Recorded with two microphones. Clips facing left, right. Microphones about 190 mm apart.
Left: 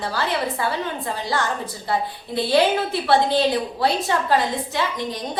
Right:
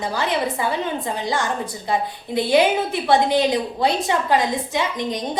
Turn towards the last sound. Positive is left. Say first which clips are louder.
# right 2 dB
turn(degrees=-20)  # may be behind; listen again after turning